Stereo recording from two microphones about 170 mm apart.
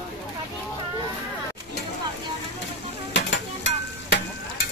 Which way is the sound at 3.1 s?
90° left.